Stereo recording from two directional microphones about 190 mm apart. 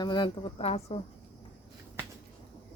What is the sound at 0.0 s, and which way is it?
Speech, 25° left (ahead or behind).